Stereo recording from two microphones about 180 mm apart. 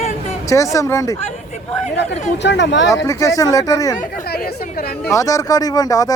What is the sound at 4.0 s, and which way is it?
Speech, 55° left (ahead or behind).